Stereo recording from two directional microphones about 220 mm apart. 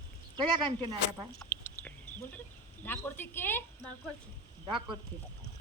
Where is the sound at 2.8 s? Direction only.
10° left (ahead or behind).